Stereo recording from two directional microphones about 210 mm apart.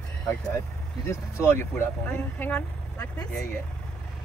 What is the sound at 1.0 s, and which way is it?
Speech, 10° left (ahead or behind).